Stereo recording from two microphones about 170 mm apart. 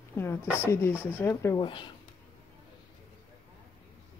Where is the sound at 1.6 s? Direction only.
30° left (ahead or behind).